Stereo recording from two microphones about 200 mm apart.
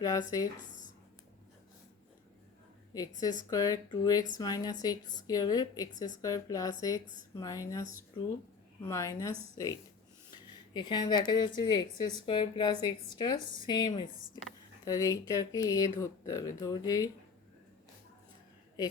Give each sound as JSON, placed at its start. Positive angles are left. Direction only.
{"t": 0.0, "sound": "speech", "side_deg": 15}
{"t": 3.5, "sound": "speech", "side_deg": 20}
{"t": 8.8, "sound": "speech", "side_deg": 15}
{"t": 10.8, "sound": "speech", "side_deg": 20}